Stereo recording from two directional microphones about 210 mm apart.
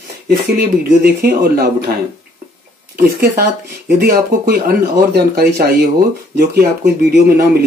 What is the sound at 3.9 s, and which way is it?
Speech, 50° right (ahead or behind).